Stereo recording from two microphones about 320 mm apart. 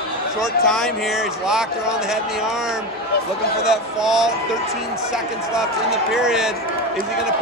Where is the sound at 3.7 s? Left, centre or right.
Centre.